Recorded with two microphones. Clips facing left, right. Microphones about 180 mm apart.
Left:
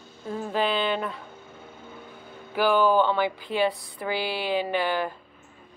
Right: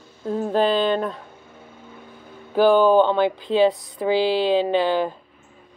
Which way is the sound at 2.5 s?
20° right (ahead or behind).